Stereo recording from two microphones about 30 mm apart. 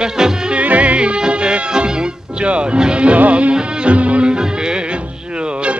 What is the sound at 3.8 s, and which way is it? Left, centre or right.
Music, right.